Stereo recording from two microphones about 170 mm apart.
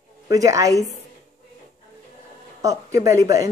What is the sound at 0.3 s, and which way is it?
Speech, 20° right (ahead or behind).